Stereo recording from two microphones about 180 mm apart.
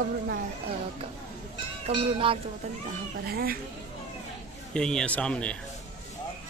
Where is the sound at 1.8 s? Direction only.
30° right (ahead or behind).